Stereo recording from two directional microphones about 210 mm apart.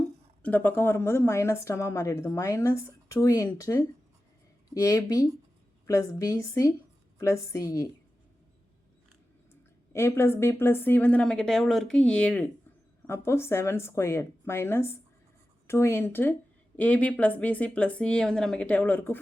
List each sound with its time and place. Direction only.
0.4 s speech: 10° left (ahead or behind)
9.5 s speech: 10° left (ahead or behind)